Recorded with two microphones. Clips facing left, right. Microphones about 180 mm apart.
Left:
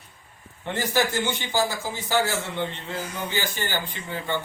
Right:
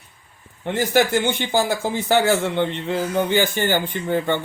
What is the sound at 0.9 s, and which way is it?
A man's voice, 60° right (ahead or behind).